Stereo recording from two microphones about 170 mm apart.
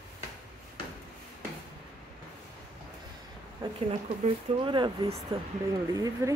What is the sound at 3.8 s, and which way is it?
Speech, 35° right (ahead or behind).